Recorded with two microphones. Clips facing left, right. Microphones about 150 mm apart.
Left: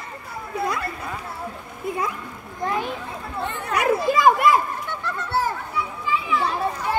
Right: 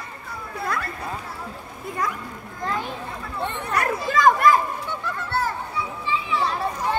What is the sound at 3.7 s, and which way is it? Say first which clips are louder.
Speech: left 3 dB; 10° left (ahead or behind).